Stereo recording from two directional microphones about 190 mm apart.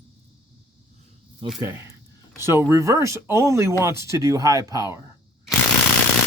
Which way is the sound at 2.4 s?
15° right (ahead or behind).